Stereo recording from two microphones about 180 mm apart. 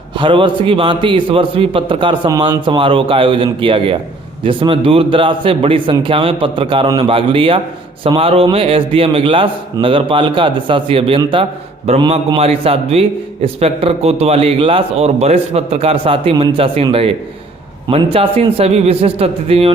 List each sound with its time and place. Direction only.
0.1 s a man's voice: 30° right (ahead or behind)